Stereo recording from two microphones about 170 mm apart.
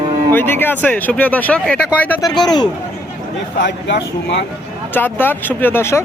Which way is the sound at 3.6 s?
85° left.